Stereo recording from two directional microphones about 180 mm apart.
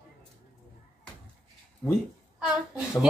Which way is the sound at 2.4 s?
5° right (ahead or behind).